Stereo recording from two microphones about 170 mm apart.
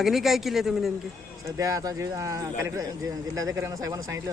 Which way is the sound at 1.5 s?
20° right (ahead or behind).